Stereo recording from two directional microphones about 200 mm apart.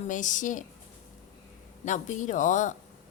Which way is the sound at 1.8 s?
40° left (ahead or behind).